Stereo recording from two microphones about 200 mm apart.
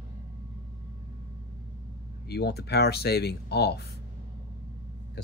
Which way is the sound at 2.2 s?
55° left (ahead or behind).